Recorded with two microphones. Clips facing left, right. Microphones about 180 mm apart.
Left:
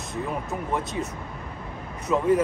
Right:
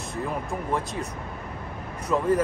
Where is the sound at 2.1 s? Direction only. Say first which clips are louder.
Left 1 dB; 5° left (ahead or behind).